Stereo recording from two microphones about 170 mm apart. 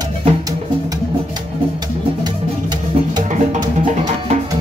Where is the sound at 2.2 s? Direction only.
25° right (ahead or behind).